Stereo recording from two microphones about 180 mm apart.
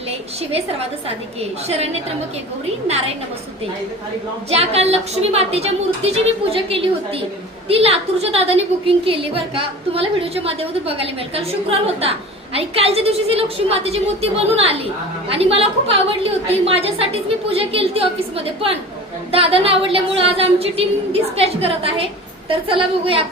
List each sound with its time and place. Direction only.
0.5 s a woman's voice: 35° right (ahead or behind)
4.5 s a woman's voice: 35° right (ahead or behind)
12.5 s a woman's voice: 35° right (ahead or behind)
19.3 s a woman's voice: 30° right (ahead or behind)